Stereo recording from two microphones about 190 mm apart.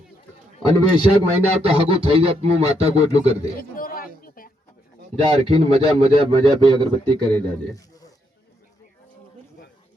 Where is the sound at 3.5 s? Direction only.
50° left (ahead or behind).